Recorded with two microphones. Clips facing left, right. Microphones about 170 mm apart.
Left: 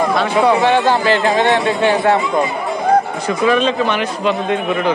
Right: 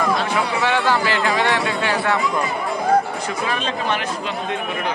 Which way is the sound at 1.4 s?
25° left (ahead or behind).